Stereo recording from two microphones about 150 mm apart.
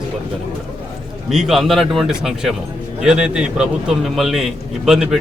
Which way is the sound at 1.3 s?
Centre (ahead or behind).